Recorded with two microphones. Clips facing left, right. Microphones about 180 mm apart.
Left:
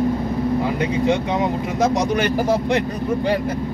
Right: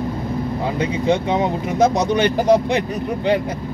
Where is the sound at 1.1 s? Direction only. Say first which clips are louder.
Right 1 dB; 25° right (ahead or behind).